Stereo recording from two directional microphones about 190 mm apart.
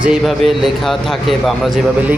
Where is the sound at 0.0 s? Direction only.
5° right (ahead or behind).